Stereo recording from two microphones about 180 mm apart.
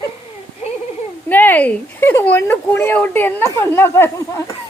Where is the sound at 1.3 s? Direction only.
10° left (ahead or behind).